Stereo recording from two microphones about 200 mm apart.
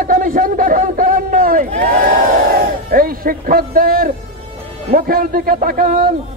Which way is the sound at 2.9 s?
45° right (ahead or behind).